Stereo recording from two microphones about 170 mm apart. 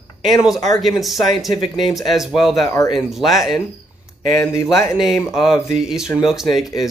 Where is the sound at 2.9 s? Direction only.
Centre (ahead or behind).